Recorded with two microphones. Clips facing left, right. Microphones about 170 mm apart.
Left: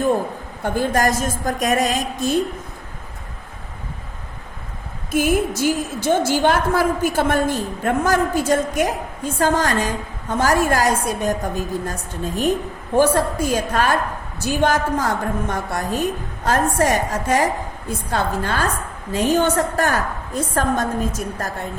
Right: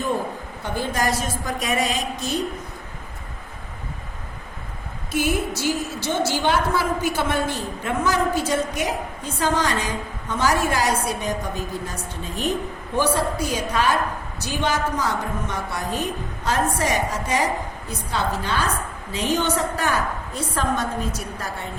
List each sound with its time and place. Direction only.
0.6 s a woman's voice: 50° left (ahead or behind)
5.1 s a woman's voice: 50° left (ahead or behind)